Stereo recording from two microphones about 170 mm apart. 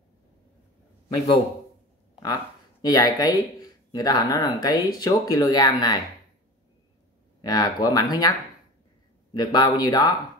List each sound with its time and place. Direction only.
1.1 s a man's voice: 30° left (ahead or behind)
2.8 s speech: 20° left (ahead or behind)
7.4 s speech: 25° left (ahead or behind)
9.3 s speech: 25° left (ahead or behind)